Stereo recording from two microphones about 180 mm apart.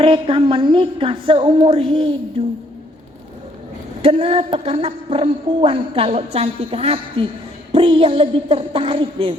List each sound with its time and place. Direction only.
0.0 s a woman's voice: 30° right (ahead or behind)
4.0 s a woman's voice: 30° right (ahead or behind)